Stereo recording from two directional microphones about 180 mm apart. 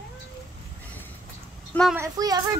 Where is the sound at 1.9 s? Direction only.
20° right (ahead or behind).